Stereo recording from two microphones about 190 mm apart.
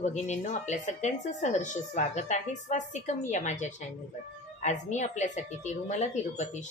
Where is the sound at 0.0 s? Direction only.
40° left (ahead or behind).